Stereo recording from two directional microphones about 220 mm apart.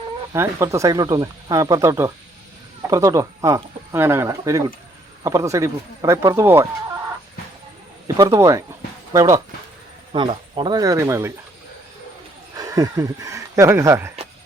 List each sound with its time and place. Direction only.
0.3 s speech: 15° right (ahead or behind)
8.0 s speech: 15° right (ahead or behind)
10.1 s speech: 25° right (ahead or behind)
12.5 s speech: 15° right (ahead or behind)